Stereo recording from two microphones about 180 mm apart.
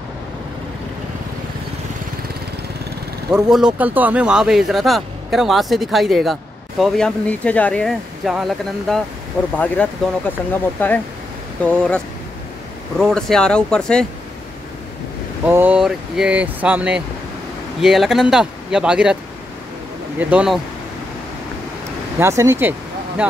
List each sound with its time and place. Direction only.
3.4 s speech: 5° right (ahead or behind)
13.0 s speech: 5° left (ahead or behind)
15.4 s speech: 10° right (ahead or behind)
20.2 s speech: 5° right (ahead or behind)
22.2 s speech: 15° right (ahead or behind)